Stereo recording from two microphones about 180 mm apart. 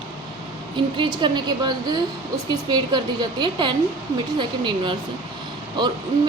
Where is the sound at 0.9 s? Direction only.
25° right (ahead or behind).